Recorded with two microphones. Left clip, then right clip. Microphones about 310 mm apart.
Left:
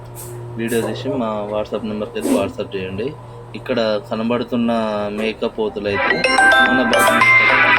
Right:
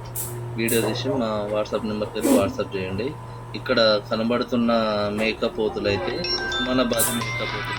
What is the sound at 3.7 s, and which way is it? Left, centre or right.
Speech, centre.